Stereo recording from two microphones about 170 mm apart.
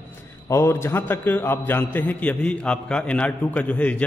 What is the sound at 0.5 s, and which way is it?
A man's voice, 15° left (ahead or behind).